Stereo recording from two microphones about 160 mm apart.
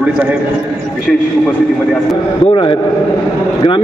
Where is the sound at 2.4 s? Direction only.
35° left (ahead or behind).